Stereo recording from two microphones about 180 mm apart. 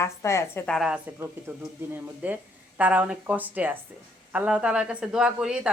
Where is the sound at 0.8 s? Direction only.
5° right (ahead or behind).